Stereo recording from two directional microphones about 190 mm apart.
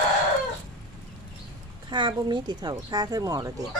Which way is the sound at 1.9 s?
25° right (ahead or behind).